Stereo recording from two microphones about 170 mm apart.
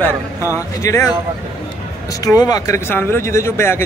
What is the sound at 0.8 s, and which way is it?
Speech, 20° left (ahead or behind).